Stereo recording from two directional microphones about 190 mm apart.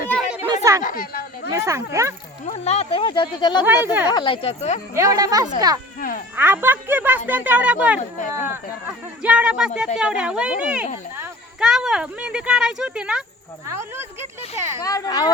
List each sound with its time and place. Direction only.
0.5 s a sound: 15° right (ahead or behind)
0.8 s a sound: 45° left (ahead or behind)
1.5 s speech: 15° right (ahead or behind)
2.5 s speech: 30° left (ahead or behind)
3.8 s speech: 15° right (ahead or behind)
4.1 s speech: 25° left (ahead or behind)
4.9 s speech: 20° right (ahead or behind)
6.0 s speech: 45° left (ahead or behind)
6.3 s speech: 10° right (ahead or behind)
9.2 s speech: 5° right (ahead or behind)
14.8 s speech: 20° left (ahead or behind)